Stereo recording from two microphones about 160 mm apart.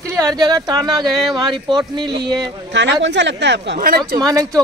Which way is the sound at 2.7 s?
90° right.